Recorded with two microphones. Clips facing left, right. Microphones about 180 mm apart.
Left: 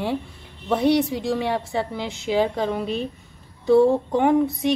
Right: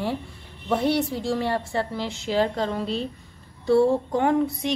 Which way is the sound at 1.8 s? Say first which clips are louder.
Left 1 dB; 15° left (ahead or behind).